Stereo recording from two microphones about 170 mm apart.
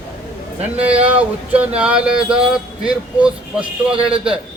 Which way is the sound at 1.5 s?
10° right (ahead or behind).